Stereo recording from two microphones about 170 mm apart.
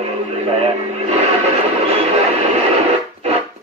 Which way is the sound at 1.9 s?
35° right (ahead or behind).